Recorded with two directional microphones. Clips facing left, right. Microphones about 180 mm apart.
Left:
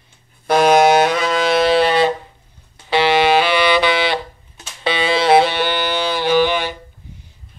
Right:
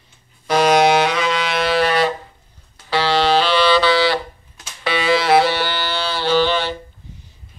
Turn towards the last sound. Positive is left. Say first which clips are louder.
# left 1 dB
turn(degrees=15)  # may be behind; listen again after turning